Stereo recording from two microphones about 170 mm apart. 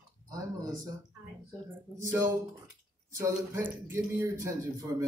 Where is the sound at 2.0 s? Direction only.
15° right (ahead or behind).